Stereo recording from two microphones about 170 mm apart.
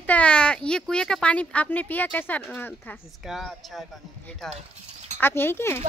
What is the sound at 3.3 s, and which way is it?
Speech, centre (ahead or behind).